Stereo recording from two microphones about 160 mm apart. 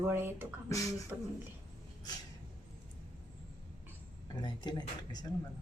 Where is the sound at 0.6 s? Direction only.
20° left (ahead or behind).